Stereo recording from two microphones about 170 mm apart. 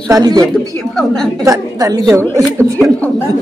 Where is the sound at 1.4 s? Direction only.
20° right (ahead or behind).